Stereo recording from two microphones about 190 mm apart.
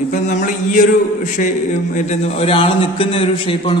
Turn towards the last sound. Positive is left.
turn(degrees=30)  # may be behind; listen again after turning